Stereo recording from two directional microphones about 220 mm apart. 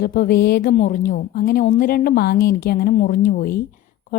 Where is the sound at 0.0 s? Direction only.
45° left (ahead or behind).